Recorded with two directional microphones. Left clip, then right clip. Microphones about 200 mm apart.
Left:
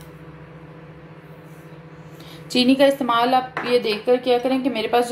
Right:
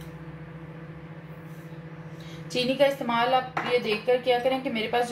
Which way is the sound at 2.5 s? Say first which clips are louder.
Left 7 dB; 45° left (ahead or behind).